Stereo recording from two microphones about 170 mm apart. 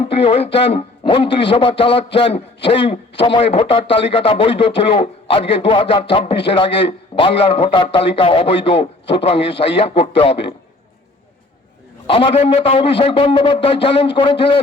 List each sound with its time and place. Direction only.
0.0 s a man's voice: 35° left (ahead or behind)
12.0 s a man's voice: 30° left (ahead or behind)